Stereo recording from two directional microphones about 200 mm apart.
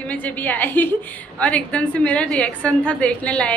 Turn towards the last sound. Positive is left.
turn(degrees=5)  # may be behind; listen again after turning